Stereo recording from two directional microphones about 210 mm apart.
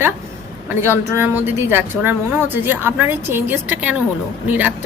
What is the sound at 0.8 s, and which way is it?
Speech, 10° right (ahead or behind).